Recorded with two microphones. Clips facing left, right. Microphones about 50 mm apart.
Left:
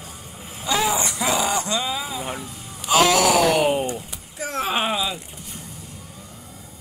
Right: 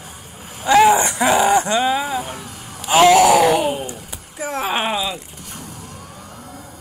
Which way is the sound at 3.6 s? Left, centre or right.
Left.